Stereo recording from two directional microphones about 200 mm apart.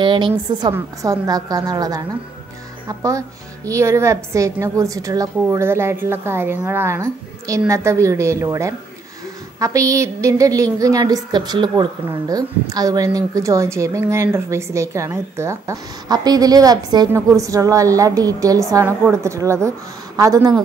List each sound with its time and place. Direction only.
0.0 s a woman's voice: 25° right (ahead or behind)